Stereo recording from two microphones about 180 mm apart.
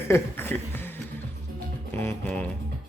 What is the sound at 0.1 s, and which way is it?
Music, 10° left (ahead or behind).